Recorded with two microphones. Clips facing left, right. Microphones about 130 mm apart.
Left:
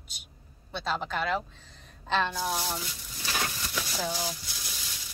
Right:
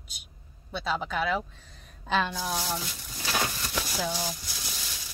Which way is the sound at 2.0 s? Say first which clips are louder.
Right 1 dB; 5° right (ahead or behind).